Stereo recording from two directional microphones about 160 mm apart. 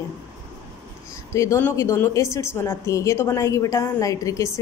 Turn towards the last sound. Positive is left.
turn(degrees=20)  # may be behind; listen again after turning